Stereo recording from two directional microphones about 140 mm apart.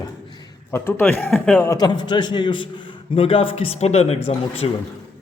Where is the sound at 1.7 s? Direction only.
30° left (ahead or behind); by 4.6 s 45° left (ahead or behind).